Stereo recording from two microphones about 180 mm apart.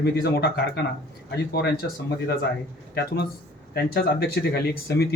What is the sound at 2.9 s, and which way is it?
Speech, 65° left (ahead or behind).